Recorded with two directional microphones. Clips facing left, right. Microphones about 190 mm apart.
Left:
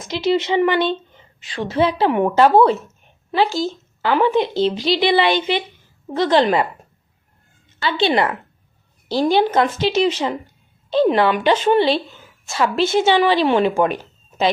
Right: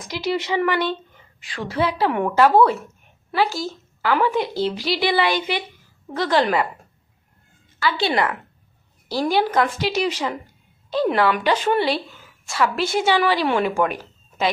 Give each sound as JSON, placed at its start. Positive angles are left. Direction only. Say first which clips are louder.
{"t": 0.1, "sound": "a woman's voice", "louder": "left 5 dB", "side_deg": 25}
{"t": 7.8, "sound": "a woman's voice", "louder": "left 3 dB", "side_deg": 25}